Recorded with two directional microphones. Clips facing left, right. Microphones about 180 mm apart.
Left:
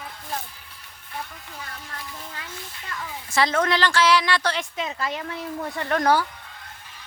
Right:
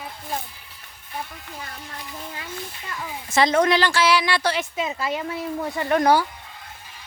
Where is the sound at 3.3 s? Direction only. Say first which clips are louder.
Right 4 dB; 20° right (ahead or behind).